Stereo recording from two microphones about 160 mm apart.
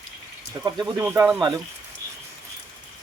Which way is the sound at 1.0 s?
15° right (ahead or behind).